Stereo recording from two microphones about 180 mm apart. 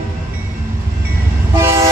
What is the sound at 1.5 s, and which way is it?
Vehicle, 15° right (ahead or behind).